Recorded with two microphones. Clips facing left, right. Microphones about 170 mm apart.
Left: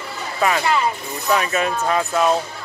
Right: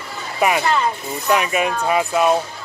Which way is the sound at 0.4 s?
15° right (ahead or behind).